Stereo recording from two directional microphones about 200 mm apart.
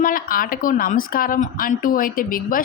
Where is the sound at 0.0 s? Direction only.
45° left (ahead or behind).